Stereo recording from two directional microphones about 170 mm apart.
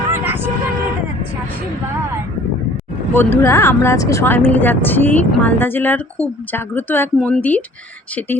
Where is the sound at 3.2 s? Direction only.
15° left (ahead or behind).